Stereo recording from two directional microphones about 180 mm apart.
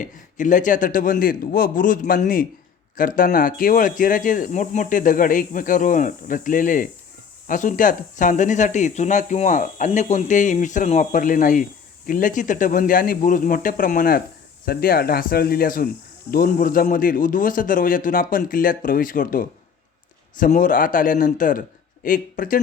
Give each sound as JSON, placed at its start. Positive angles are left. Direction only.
{"t": 0.0, "sound": "speech", "side_deg": 45}